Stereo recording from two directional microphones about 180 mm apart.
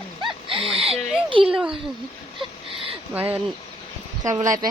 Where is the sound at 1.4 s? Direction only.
5° right (ahead or behind).